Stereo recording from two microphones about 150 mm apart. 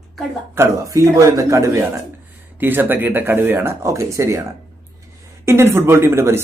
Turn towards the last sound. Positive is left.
turn(degrees=-15)  # may be behind; listen again after turning